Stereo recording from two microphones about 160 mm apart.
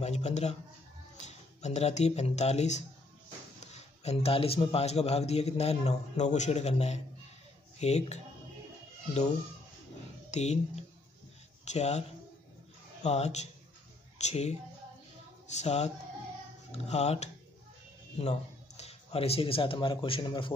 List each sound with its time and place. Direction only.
0.0 s a man's voice: 45° left (ahead or behind)
10.3 s speech: 45° left (ahead or behind)
13.0 s speech: 45° left (ahead or behind)